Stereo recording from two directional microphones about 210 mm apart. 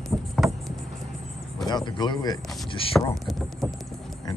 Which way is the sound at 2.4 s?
Centre (ahead or behind).